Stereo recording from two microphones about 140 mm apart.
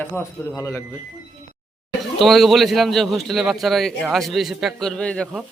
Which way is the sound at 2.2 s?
Centre (ahead or behind).